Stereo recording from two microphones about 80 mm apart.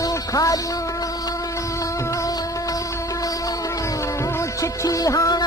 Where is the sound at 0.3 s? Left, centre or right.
Left.